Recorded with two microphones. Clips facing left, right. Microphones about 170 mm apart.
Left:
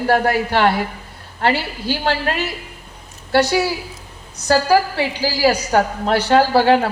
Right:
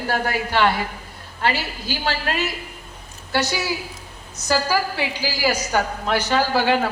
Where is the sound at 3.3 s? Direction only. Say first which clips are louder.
Left 7 dB; 60° left (ahead or behind).